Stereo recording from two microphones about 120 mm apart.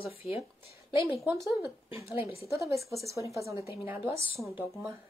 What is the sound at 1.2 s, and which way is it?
A woman's voice, 20° right (ahead or behind).